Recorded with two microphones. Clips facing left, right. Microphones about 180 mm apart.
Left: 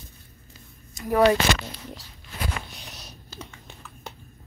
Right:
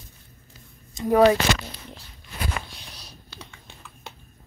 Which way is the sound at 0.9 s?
20° right (ahead or behind).